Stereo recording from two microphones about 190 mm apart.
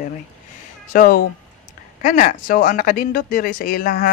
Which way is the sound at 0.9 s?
50° left (ahead or behind).